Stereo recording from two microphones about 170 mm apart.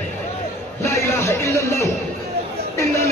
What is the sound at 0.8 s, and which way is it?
Speech, 15° left (ahead or behind).